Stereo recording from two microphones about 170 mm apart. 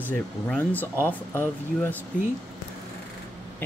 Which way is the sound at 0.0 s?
10° left (ahead or behind).